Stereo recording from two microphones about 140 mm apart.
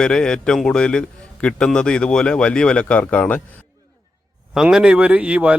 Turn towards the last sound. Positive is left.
turn(degrees=-10)  # may be behind; listen again after turning